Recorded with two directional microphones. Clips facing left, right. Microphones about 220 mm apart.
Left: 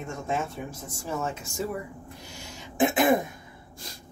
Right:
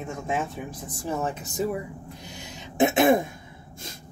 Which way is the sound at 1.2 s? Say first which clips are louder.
Right 4 dB; 20° right (ahead or behind).